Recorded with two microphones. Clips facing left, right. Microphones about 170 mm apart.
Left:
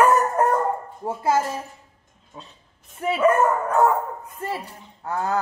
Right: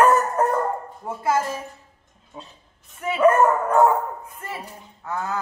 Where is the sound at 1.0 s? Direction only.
30° left (ahead or behind).